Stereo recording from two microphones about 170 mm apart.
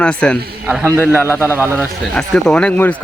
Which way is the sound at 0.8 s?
15° right (ahead or behind).